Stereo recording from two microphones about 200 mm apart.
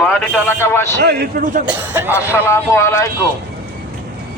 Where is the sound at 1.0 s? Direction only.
55° right (ahead or behind).